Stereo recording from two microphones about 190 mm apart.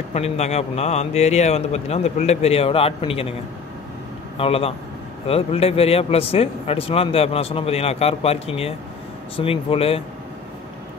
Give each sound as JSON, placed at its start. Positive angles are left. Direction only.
{"t": 0.1, "sound": "speech", "side_deg": 35}
{"t": 4.4, "sound": "speech", "side_deg": 30}